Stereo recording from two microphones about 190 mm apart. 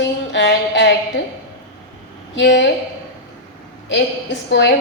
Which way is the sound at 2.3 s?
70° left (ahead or behind).